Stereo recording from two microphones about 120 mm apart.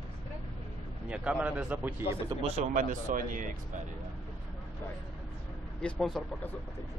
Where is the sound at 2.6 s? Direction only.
90° right.